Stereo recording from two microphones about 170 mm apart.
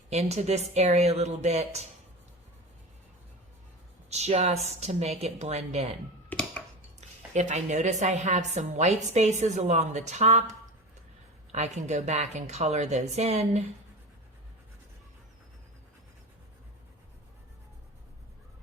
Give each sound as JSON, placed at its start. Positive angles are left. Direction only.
{"t": 0.1, "sound": "a woman's voice", "side_deg": -40}
{"t": 4.1, "sound": "a woman's voice", "side_deg": -40}
{"t": 6.3, "sound": "a sound", "side_deg": 10}
{"t": 7.3, "sound": "a woman's voice", "side_deg": -45}
{"t": 11.5, "sound": "a woman's voice", "side_deg": -45}